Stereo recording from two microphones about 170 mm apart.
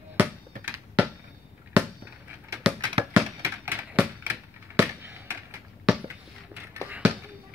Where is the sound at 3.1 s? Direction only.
10° right (ahead or behind).